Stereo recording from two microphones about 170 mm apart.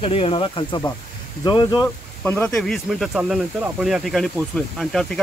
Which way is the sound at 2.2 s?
15° left (ahead or behind).